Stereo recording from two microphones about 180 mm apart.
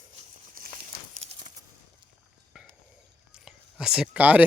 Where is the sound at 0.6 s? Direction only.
55° right (ahead or behind).